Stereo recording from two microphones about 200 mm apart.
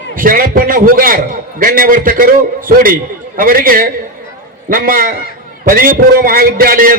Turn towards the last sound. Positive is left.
turn(degrees=-45)  # may be behind; listen again after turning